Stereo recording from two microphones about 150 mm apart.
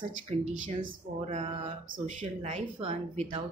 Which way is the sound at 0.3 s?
45° right (ahead or behind).